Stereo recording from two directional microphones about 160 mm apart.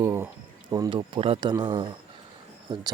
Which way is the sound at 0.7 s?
25° right (ahead or behind).